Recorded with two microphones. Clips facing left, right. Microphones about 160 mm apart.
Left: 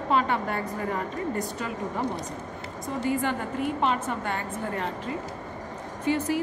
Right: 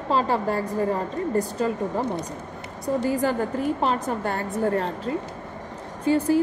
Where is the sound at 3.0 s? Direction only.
35° right (ahead or behind).